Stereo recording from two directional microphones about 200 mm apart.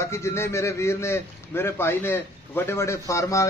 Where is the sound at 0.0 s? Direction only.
15° left (ahead or behind).